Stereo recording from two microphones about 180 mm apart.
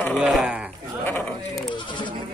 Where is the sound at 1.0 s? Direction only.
10° left (ahead or behind).